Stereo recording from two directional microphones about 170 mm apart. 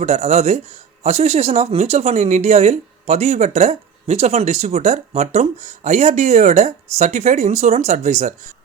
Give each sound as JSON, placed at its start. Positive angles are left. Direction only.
{"t": 0.0, "sound": "speech", "side_deg": -40}